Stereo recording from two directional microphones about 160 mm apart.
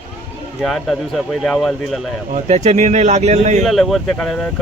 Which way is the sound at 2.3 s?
45° right (ahead or behind).